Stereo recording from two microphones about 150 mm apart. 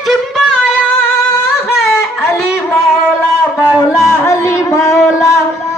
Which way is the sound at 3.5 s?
15° left (ahead or behind).